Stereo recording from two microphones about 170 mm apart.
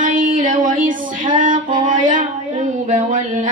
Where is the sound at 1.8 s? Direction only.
50° right (ahead or behind).